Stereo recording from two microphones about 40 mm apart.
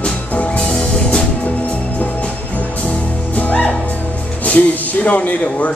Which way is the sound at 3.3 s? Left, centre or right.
Left.